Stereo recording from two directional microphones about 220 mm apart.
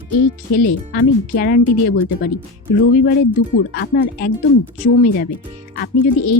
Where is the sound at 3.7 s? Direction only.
45° left (ahead or behind).